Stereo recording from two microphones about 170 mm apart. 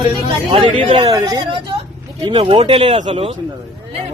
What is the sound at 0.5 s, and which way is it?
Speech, 30° right (ahead or behind).